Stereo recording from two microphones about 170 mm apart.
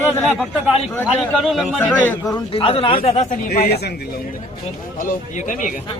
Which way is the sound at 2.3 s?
30° left (ahead or behind).